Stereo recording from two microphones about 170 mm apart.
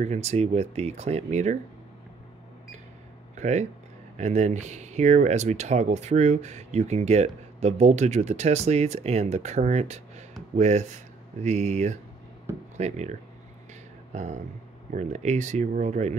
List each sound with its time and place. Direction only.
0.0 s speech: 40° right (ahead or behind)
3.3 s speech: 40° right (ahead or behind)